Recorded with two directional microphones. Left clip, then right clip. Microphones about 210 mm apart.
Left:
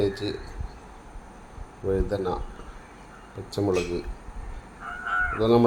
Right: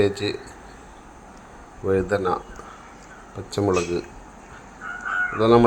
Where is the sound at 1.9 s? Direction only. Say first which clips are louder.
Right 6 dB; 15° right (ahead or behind).